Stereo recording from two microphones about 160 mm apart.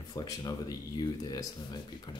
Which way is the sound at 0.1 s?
25° left (ahead or behind).